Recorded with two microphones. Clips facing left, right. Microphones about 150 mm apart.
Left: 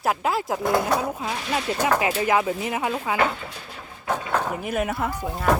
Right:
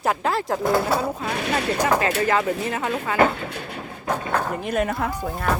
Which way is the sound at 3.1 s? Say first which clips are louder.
Right 4 dB; 65° right (ahead or behind).